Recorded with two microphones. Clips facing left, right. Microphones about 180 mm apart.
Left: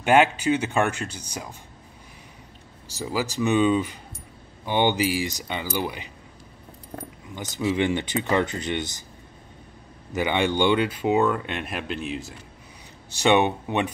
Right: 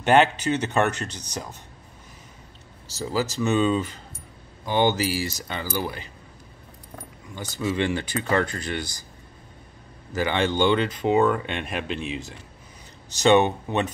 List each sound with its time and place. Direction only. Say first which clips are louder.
0.0 s speech: even; 10° left (ahead or behind)
2.9 s speech: right 1 dB; 15° left (ahead or behind)
7.3 s speech: left 2 dB; 20° left (ahead or behind)
10.1 s speech: even; 15° left (ahead or behind)
13.2 s speech: right 2 dB; 15° left (ahead or behind)